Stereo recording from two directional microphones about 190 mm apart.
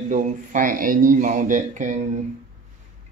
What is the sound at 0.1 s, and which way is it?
Speech, 45° right (ahead or behind).